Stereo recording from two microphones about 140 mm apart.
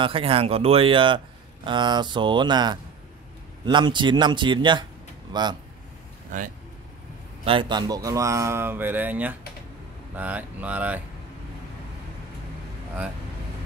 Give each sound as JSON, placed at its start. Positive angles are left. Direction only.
{"t": 0.0, "sound": "speech", "side_deg": -40}
{"t": 7.4, "sound": "speech", "side_deg": -35}